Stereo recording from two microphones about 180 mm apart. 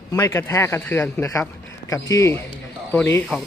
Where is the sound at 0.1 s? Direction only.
15° left (ahead or behind).